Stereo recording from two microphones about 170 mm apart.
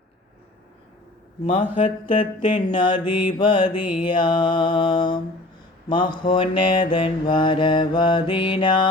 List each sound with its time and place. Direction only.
2.0 s mantra: 30° left (ahead or behind)